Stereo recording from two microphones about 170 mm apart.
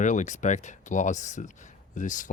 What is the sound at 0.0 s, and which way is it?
Speech, 45° left (ahead or behind).